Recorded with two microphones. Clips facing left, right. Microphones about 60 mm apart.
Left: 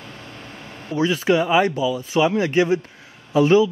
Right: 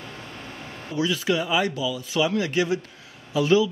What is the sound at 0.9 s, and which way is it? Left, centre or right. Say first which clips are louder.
Speech: left 5 dB; left.